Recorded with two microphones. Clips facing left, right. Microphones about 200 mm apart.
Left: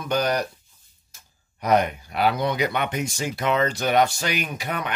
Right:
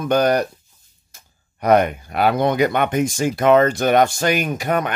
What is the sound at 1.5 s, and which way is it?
Speech, 55° right (ahead or behind).